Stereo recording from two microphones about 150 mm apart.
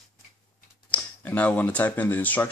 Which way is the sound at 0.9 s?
10° left (ahead or behind).